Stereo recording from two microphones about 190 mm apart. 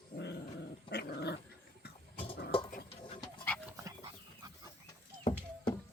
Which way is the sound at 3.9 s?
20° right (ahead or behind).